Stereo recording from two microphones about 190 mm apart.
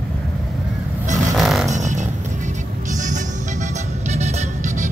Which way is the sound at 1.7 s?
40° right (ahead or behind).